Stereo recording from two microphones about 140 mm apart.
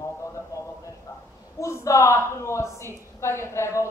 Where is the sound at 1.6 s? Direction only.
20° left (ahead or behind).